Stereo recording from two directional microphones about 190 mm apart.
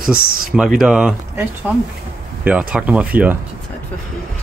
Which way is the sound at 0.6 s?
5° right (ahead or behind).